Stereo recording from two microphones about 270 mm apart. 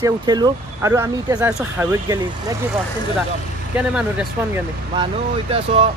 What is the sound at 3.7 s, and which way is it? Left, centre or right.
Speech, centre.